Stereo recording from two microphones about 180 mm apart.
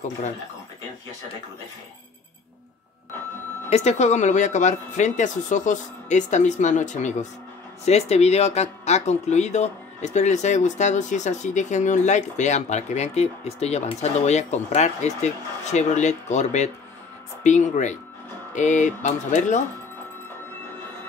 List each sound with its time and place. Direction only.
3.7 s speech: 40° left (ahead or behind)